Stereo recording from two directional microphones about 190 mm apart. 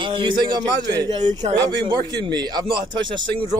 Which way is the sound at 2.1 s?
65° right (ahead or behind).